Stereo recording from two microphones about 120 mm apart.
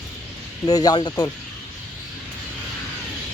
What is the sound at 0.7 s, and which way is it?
Speech, 35° left (ahead or behind).